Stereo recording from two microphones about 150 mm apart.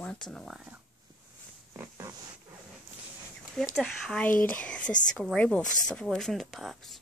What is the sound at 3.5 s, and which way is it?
Speech, centre (ahead or behind).